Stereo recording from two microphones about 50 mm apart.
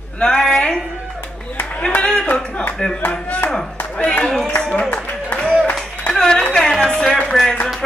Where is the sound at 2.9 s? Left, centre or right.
Left.